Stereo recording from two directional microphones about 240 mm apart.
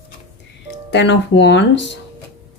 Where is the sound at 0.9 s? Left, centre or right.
Left.